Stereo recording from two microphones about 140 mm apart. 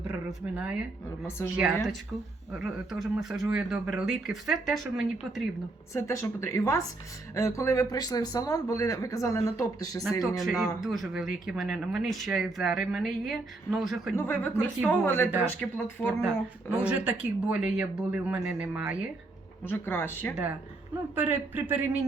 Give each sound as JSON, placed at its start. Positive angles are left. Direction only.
{"t": 0.1, "sound": "a sound", "side_deg": -5}
{"t": 1.5, "sound": "speech", "side_deg": -5}
{"t": 5.9, "sound": "speech", "side_deg": 20}
{"t": 10.0, "sound": "speech", "side_deg": 0}
{"t": 14.2, "sound": "speech", "side_deg": 15}
{"t": 16.2, "sound": "speech", "side_deg": -5}
{"t": 19.7, "sound": "speech", "side_deg": 15}
{"t": 20.3, "sound": "speech", "side_deg": -10}